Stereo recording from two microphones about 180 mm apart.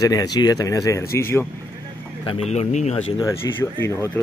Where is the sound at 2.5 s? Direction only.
40° left (ahead or behind).